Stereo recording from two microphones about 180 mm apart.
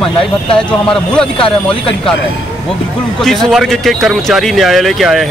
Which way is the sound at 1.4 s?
30° left (ahead or behind).